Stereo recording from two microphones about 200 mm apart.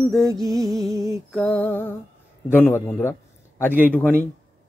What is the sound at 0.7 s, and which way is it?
Music, 15° right (ahead or behind).